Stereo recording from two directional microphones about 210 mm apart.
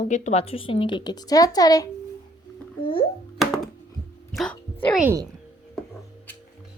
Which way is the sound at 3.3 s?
Centre (ahead or behind).